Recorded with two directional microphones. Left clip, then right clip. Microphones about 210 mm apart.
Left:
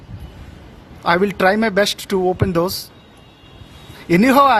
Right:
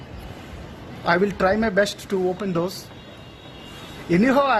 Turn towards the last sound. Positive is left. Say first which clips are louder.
# left 6 dB
turn(degrees=40)  # may be behind; listen again after turning